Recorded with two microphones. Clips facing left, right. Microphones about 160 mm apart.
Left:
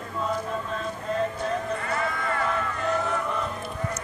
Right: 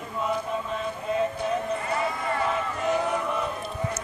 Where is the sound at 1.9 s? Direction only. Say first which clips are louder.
Right 1 dB; 20° right (ahead or behind).